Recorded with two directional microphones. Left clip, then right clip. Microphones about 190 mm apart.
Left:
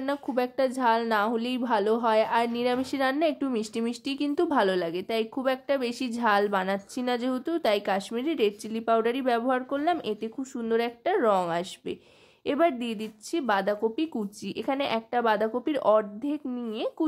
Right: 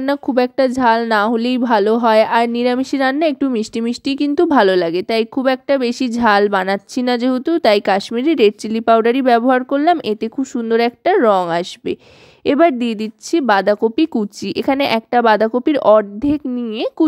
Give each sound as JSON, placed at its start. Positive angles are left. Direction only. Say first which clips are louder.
{"t": 0.0, "sound": "a woman's voice", "louder": "right 12 dB", "side_deg": -40}